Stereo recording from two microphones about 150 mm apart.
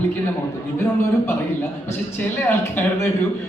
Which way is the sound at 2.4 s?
10° left (ahead or behind).